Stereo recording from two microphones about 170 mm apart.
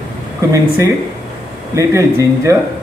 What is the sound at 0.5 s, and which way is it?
A man's voice, 20° right (ahead or behind).